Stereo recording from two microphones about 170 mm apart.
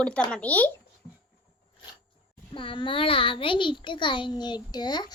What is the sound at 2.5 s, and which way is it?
A child's voice, 30° left (ahead or behind).